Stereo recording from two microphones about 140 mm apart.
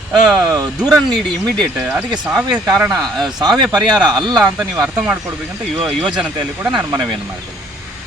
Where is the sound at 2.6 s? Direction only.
20° right (ahead or behind).